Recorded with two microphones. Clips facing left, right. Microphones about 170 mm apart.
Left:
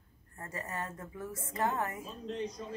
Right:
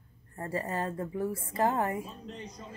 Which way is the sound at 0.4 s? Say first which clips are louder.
Right 7 dB; 30° right (ahead or behind).